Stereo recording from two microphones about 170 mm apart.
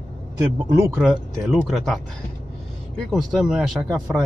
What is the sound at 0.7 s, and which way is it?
Speech, 15° right (ahead or behind).